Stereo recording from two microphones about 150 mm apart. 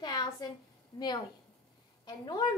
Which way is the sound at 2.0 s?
30° left (ahead or behind).